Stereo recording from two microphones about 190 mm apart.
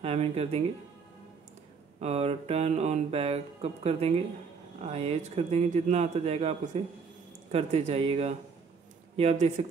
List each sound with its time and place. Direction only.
0.0 s music: 35° right (ahead or behind)
2.0 s music: 35° right (ahead or behind)